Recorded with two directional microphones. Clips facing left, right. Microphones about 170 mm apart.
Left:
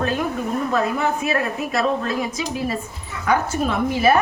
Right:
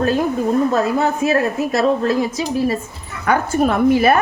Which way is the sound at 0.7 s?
35° right (ahead or behind).